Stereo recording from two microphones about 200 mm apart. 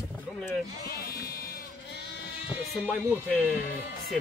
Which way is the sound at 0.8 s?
50° left (ahead or behind).